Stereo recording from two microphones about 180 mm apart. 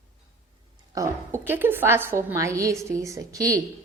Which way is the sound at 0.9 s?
15° right (ahead or behind).